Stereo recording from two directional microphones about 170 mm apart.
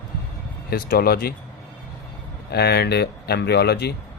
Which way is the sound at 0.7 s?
65° left (ahead or behind).